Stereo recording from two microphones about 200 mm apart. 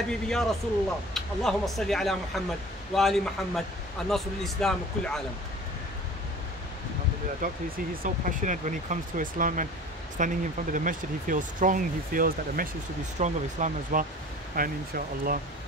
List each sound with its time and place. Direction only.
0.1 s speech: centre (ahead or behind)
7.4 s speech: 45° right (ahead or behind)